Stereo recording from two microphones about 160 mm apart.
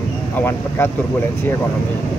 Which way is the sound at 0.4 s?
15° left (ahead or behind).